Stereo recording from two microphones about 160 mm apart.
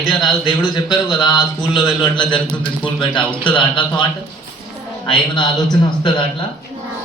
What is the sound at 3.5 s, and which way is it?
Speech, 30° left (ahead or behind).